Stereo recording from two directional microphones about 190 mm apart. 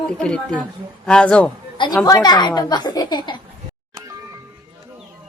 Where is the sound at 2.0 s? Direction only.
20° left (ahead or behind).